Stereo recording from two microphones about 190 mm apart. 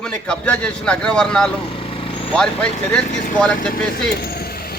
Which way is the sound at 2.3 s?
5° left (ahead or behind).